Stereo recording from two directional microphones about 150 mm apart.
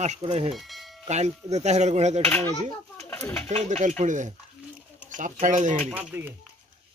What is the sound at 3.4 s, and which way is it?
Speech, 45° right (ahead or behind).